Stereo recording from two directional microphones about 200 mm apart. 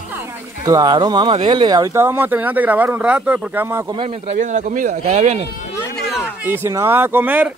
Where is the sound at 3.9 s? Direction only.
30° right (ahead or behind).